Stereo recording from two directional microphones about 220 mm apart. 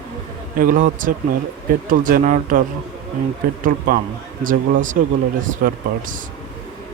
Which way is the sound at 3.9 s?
40° right (ahead or behind).